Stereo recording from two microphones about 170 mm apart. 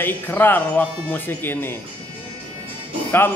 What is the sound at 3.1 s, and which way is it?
Speech, 15° left (ahead or behind).